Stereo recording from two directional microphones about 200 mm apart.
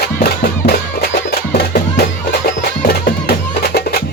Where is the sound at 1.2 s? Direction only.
50° left (ahead or behind).